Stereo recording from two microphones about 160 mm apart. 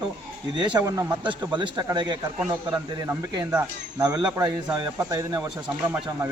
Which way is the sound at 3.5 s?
20° right (ahead or behind).